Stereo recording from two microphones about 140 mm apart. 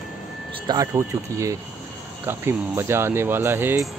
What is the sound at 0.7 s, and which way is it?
Speech, 20° right (ahead or behind).